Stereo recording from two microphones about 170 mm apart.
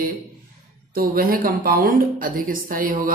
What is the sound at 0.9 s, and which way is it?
A woman's voice, 60° right (ahead or behind).